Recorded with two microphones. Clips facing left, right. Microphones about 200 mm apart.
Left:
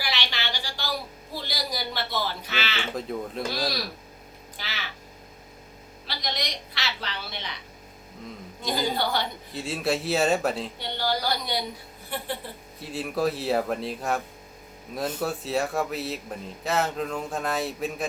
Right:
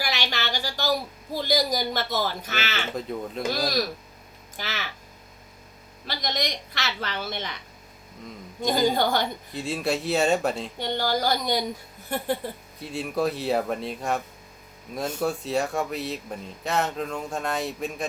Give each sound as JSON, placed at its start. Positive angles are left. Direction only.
{"t": 0.0, "sound": "a sound", "side_deg": -45}
{"t": 2.9, "sound": "speech", "side_deg": 0}
{"t": 3.6, "sound": "a woman's voice", "side_deg": -45}
{"t": 6.1, "sound": "a woman's voice", "side_deg": -45}
{"t": 8.6, "sound": "a woman's voice", "side_deg": -45}
{"t": 9.6, "sound": "speech", "side_deg": 0}
{"t": 10.8, "sound": "a woman's voice", "side_deg": -45}
{"t": 12.8, "sound": "speech", "side_deg": 0}